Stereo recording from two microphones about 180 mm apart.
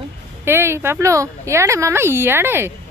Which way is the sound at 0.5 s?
15° right (ahead or behind).